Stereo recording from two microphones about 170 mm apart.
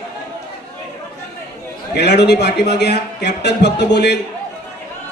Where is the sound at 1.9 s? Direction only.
85° left.